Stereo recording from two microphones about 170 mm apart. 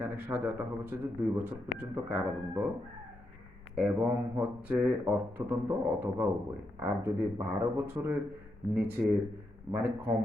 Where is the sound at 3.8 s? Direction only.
10° right (ahead or behind).